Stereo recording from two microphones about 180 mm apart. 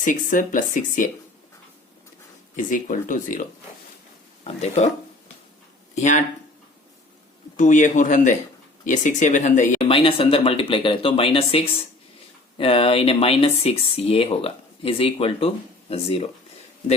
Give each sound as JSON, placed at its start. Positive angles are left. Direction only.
{"t": 0.0, "sound": "speech", "side_deg": 45}
{"t": 2.6, "sound": "speech", "side_deg": 50}
{"t": 4.4, "sound": "speech", "side_deg": 35}
{"t": 5.9, "sound": "speech", "side_deg": 40}
{"t": 7.5, "sound": "speech", "side_deg": 45}
{"t": 9.9, "sound": "speech", "side_deg": 30}